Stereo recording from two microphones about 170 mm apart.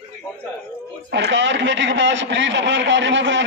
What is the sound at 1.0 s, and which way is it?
A man's voice, 90° right.